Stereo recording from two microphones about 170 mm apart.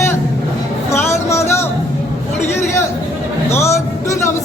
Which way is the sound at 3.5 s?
15° left (ahead or behind).